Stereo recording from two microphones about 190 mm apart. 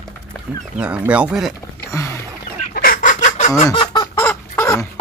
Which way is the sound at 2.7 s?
50° left (ahead or behind).